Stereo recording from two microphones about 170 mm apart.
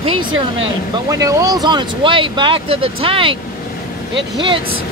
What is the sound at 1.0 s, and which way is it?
Speech, 20° right (ahead or behind).